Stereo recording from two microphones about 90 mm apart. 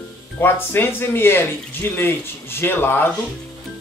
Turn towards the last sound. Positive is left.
turn(degrees=25)  # may be behind; listen again after turning